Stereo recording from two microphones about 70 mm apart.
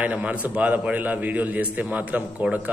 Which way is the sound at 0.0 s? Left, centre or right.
Right.